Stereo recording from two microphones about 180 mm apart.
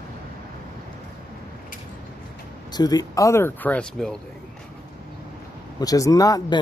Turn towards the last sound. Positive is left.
turn(degrees=20)  # may be behind; listen again after turning